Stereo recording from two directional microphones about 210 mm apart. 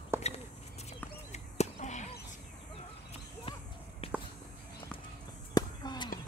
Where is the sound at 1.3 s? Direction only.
35° left (ahead or behind).